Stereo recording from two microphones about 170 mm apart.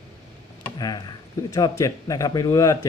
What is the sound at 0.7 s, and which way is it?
Speech, 25° left (ahead or behind).